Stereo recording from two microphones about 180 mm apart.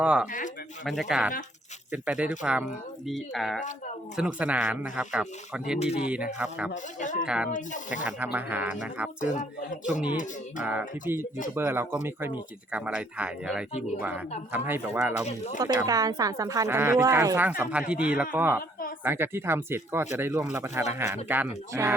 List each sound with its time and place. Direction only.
0.0 s speech: 5° right (ahead or behind)
0.3 s speech: 45° left (ahead or behind)
0.9 s speech: centre (ahead or behind)
7.0 s speech: 45° left (ahead or behind)
7.3 s speech: 5° right (ahead or behind)
7.5 s speech: 45° left (ahead or behind)
8.0 s speech: 10° right (ahead or behind)
9.2 s speech: 45° left (ahead or behind)
10.6 s speech: 10° right (ahead or behind)
15.8 s speech: 20° right (ahead or behind)